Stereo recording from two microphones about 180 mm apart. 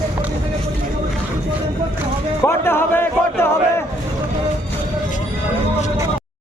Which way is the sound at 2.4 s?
15° left (ahead or behind).